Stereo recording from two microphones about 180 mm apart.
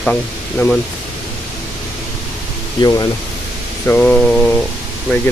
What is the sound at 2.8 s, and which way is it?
Speech, 25° left (ahead or behind).